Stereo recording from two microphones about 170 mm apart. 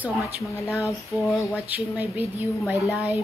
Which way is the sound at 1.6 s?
10° right (ahead or behind).